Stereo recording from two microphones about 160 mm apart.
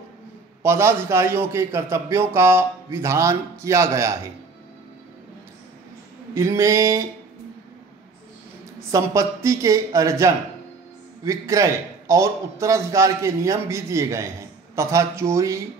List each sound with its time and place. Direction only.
0.6 s a man's voice: 15° right (ahead or behind)
6.3 s a man's voice: 20° right (ahead or behind)
8.9 s a man's voice: 20° right (ahead or behind)